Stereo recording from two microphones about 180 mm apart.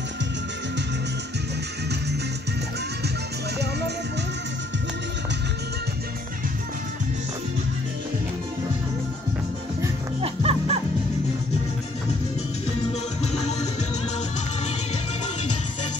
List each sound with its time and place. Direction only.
10.2 s music: 35° right (ahead or behind)
13.2 s music: 40° left (ahead or behind)